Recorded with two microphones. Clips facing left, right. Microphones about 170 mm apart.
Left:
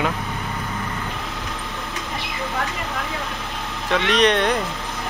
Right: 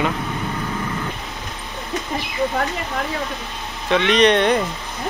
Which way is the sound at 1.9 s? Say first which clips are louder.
Right 9 dB; 40° right (ahead or behind).